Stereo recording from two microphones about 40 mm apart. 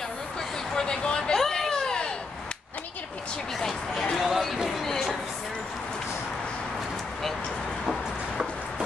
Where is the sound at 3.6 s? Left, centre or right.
Centre.